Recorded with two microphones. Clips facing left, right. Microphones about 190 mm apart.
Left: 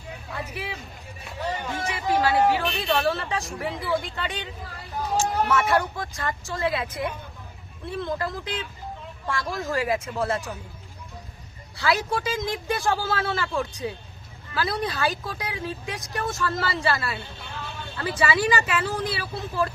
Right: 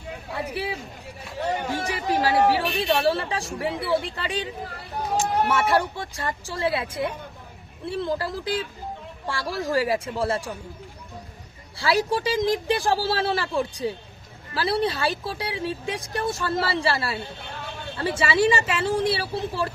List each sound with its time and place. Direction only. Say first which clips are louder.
0.3 s speech: right 5 dB; 30° right (ahead or behind)
5.5 s speech: right 1 dB; 30° right (ahead or behind)
11.8 s speech: right 2 dB; 35° right (ahead or behind)